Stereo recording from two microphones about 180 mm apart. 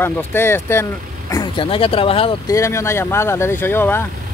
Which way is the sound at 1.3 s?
25° left (ahead or behind).